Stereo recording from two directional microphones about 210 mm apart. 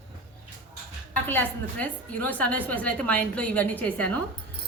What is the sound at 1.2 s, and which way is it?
A woman's voice, 10° left (ahead or behind).